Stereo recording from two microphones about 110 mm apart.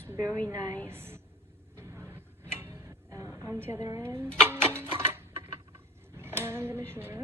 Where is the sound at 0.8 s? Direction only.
20° right (ahead or behind).